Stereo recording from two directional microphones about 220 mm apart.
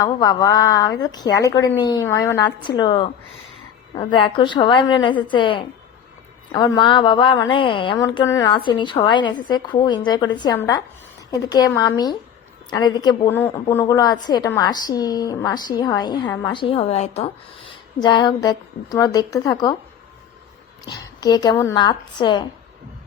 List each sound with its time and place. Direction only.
0.0 s a woman's voice: 15° left (ahead or behind)
20.8 s a woman's voice: 20° left (ahead or behind)